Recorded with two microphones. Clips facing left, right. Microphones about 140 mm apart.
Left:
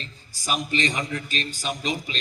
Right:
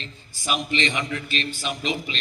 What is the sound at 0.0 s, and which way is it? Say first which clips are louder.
A man's voice: right 1 dB; 40° left (ahead or behind).